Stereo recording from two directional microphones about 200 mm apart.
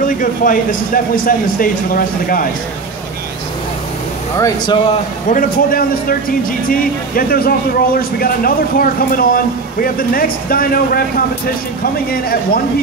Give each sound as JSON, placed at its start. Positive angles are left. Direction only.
{"t": 0.0, "sound": "speech", "side_deg": 45}
{"t": 4.4, "sound": "speech", "side_deg": 20}
{"t": 5.3, "sound": "speech", "side_deg": 45}